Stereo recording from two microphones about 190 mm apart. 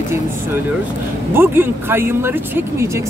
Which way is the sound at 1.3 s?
10° right (ahead or behind).